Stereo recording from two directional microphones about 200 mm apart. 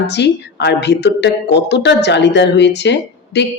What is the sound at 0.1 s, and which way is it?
Speech, 60° left (ahead or behind).